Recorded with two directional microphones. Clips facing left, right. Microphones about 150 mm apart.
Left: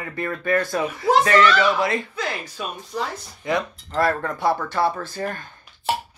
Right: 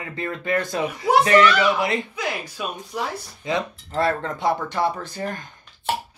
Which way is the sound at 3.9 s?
25° right (ahead or behind).